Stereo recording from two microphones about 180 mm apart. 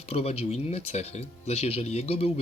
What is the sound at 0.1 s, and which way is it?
Speech, 35° left (ahead or behind).